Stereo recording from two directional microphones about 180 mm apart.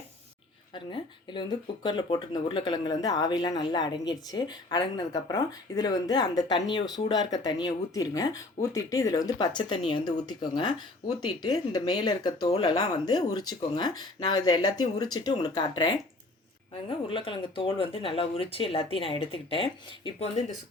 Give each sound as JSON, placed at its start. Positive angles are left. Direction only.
{"t": 0.7, "sound": "speech", "side_deg": 25}